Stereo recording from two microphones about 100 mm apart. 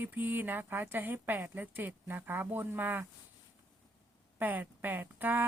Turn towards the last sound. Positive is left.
turn(degrees=-20)  # may be behind; listen again after turning